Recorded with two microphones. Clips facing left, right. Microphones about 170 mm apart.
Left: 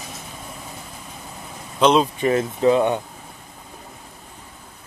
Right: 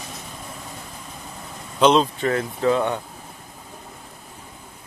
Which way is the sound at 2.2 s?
20° left (ahead or behind).